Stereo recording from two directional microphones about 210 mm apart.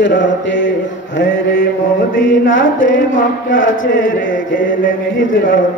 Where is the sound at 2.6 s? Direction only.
65° left (ahead or behind).